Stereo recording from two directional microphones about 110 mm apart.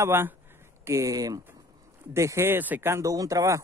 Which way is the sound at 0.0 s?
25° right (ahead or behind).